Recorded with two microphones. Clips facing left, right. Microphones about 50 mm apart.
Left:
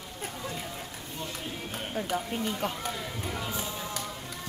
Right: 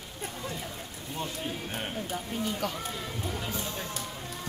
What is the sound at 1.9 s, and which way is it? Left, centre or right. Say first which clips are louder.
Speech: left 3 dB; left.